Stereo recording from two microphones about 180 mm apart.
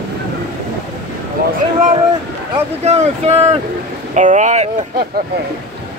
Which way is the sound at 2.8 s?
35° right (ahead or behind).